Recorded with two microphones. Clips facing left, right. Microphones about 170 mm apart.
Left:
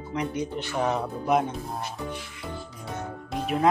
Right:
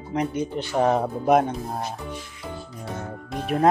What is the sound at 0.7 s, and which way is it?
Speech, 45° right (ahead or behind).